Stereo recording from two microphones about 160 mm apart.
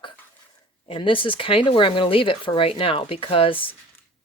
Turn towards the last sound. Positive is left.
turn(degrees=35)  # may be behind; listen again after turning